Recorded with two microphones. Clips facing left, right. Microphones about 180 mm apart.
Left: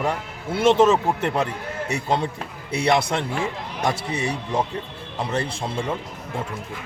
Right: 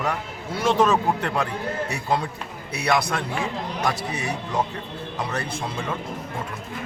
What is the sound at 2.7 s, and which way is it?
A man's voice, 25° left (ahead or behind).